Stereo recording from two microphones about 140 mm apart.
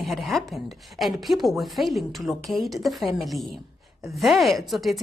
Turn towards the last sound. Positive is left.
turn(degrees=0)  # may be behind; listen again after turning